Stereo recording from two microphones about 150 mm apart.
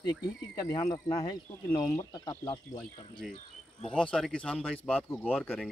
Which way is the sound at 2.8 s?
5° left (ahead or behind).